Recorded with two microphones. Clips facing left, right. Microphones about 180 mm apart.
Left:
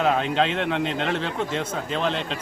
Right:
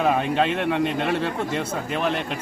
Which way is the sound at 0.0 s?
10° right (ahead or behind).